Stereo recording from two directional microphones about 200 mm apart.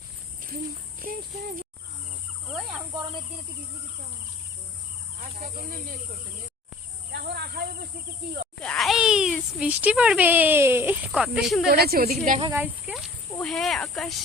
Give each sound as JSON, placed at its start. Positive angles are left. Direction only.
{"t": 1.0, "sound": "speech", "side_deg": -45}
{"t": 2.5, "sound": "cricket", "side_deg": 0}
{"t": 5.2, "sound": "speech", "side_deg": -45}
{"t": 7.1, "sound": "speech", "side_deg": -55}
{"t": 8.6, "sound": "speech", "side_deg": 0}
{"t": 11.7, "sound": "speech", "side_deg": -50}
{"t": 12.5, "sound": "speech", "side_deg": -10}
{"t": 13.4, "sound": "speech", "side_deg": 0}